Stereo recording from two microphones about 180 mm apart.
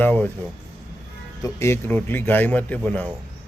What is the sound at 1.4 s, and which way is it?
A man's voice, 15° left (ahead or behind).